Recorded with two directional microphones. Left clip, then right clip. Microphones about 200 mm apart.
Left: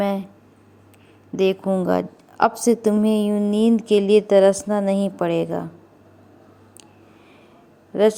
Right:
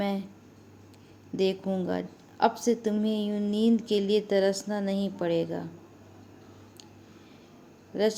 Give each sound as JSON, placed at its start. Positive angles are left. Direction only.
{"t": 0.0, "sound": "a sound", "side_deg": 20}
{"t": 1.4, "sound": "speech", "side_deg": 20}
{"t": 1.8, "sound": "a woman's voice", "side_deg": 40}
{"t": 7.9, "sound": "speech", "side_deg": 25}